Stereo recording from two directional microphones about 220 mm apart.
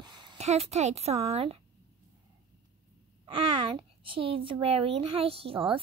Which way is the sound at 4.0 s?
25° right (ahead or behind).